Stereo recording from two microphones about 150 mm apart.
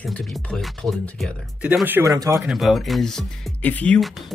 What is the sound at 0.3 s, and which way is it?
Speech, centre (ahead or behind).